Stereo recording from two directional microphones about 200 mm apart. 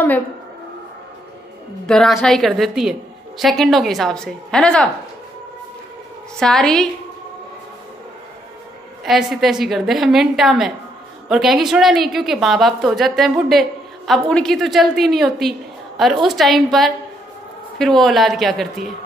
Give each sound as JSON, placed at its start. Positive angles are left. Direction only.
{"t": 1.9, "sound": "a woman's voice", "side_deg": 5}
{"t": 6.4, "sound": "a woman's voice", "side_deg": 5}
{"t": 9.0, "sound": "a woman's voice", "side_deg": 0}